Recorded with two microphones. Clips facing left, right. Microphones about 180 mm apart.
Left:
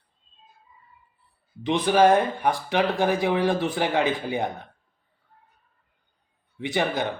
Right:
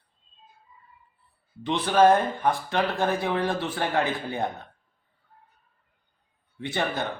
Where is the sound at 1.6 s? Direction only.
15° left (ahead or behind).